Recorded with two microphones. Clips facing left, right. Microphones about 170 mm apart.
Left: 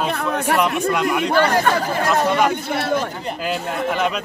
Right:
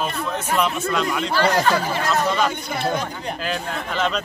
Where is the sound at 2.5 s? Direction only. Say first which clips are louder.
Left 3 dB; 70° left (ahead or behind).